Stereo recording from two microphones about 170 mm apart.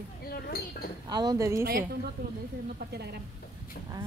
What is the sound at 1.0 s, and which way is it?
Speech, 25° right (ahead or behind).